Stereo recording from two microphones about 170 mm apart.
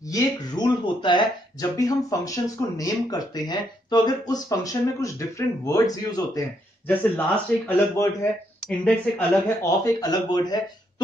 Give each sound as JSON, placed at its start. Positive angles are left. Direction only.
{"t": 0.0, "sound": "speech", "side_deg": 20}
{"t": 6.9, "sound": "a man's voice", "side_deg": 10}